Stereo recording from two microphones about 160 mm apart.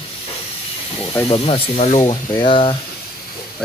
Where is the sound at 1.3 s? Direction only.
35° left (ahead or behind).